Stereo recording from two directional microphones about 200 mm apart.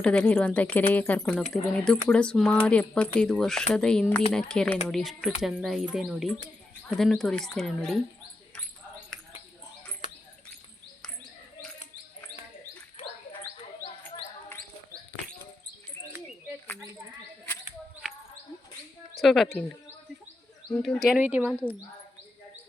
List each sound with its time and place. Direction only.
0.0 s a woman's voice: 5° left (ahead or behind)
19.2 s speech: centre (ahead or behind)
20.7 s speech: centre (ahead or behind)
21.5 s speech: 5° left (ahead or behind)